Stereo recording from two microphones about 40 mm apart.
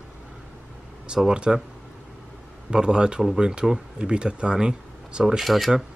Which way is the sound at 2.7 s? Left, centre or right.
Centre.